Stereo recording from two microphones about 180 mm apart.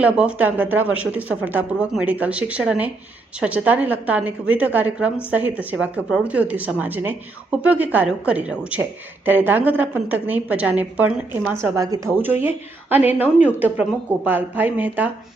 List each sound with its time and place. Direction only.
0.0 s speech: 5° right (ahead or behind)